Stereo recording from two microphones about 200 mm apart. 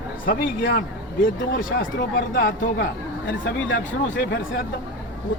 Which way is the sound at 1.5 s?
70° left (ahead or behind).